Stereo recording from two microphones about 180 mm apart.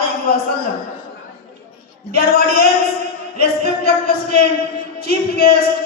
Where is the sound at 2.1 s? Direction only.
60° left (ahead or behind).